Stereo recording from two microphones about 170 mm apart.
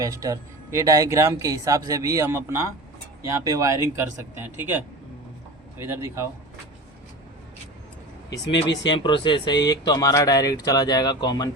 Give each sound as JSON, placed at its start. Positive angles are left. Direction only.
{"t": 0.0, "sound": "speech", "side_deg": -20}
{"t": 8.4, "sound": "speech", "side_deg": 90}
{"t": 8.9, "sound": "speech", "side_deg": 30}